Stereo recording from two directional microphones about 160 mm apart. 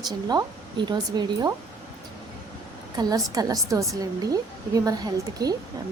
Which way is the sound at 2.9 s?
25° right (ahead or behind).